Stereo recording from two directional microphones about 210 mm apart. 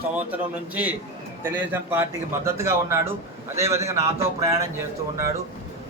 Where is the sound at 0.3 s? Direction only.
5° right (ahead or behind).